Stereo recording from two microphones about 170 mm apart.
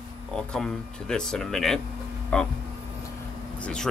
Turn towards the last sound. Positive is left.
turn(degrees=5)  # may be behind; listen again after turning